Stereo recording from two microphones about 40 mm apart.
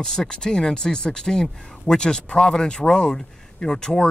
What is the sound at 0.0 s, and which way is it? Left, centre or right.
A man's voice, centre.